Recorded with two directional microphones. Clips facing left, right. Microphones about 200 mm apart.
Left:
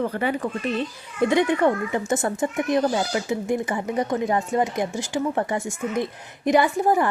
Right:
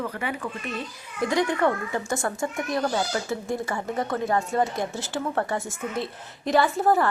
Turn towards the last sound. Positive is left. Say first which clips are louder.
# left 1 dB
turn(degrees=15)  # may be behind; listen again after turning